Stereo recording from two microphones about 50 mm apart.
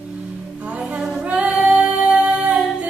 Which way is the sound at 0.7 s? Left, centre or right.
Right.